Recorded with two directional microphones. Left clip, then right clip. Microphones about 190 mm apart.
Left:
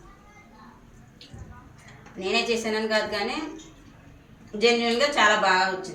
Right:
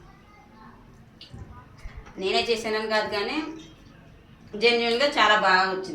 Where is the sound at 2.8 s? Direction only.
15° right (ahead or behind).